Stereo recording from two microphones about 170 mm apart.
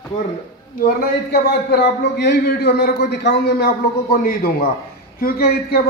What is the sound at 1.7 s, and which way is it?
A man's voice, 80° left.